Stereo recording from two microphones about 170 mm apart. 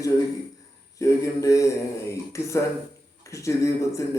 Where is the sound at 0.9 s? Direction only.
20° left (ahead or behind).